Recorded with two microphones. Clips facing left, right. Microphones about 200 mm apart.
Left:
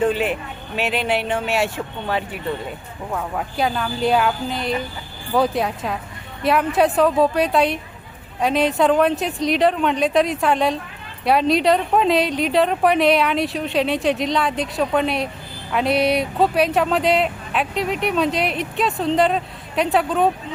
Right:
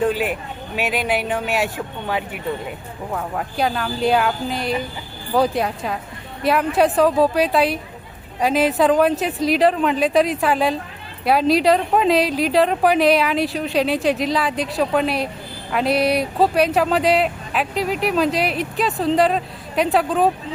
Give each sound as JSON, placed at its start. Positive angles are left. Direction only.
{"t": 0.0, "sound": "speech", "side_deg": -5}
{"t": 3.1, "sound": "speech", "side_deg": 0}